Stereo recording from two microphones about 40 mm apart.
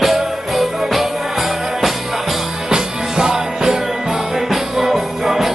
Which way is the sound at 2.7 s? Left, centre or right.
Centre.